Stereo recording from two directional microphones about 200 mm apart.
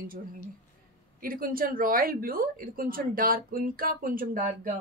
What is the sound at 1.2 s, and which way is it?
A woman's voice, 45° right (ahead or behind).